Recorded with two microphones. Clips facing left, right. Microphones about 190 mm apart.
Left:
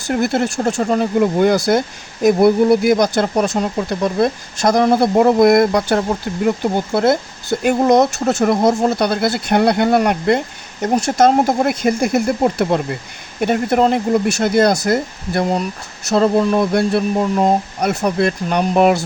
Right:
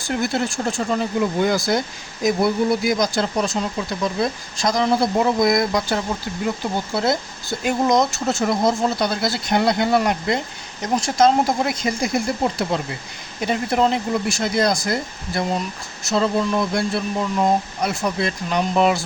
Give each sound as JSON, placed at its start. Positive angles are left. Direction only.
{"t": 0.1, "sound": "speech", "side_deg": 55}